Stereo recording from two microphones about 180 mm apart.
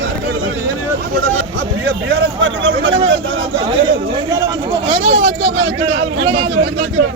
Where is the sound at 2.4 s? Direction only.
90° right.